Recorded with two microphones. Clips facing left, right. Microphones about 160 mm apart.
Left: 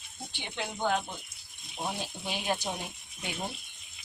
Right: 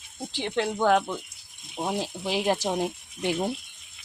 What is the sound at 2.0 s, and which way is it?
Speech, 90° right.